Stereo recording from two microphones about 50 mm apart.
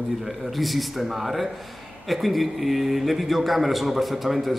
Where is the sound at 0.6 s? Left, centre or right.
Centre.